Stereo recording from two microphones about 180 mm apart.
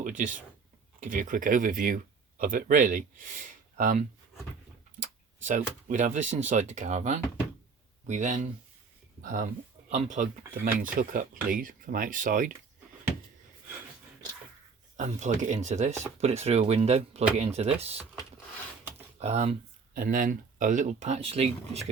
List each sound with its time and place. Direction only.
0.0 s speech: 45° right (ahead or behind)
5.5 s speech: 45° right (ahead or behind)
14.9 s speech: 40° right (ahead or behind)
19.2 s speech: 35° right (ahead or behind)
19.9 s speech: 50° right (ahead or behind); by 21.8 s 35° right (ahead or behind)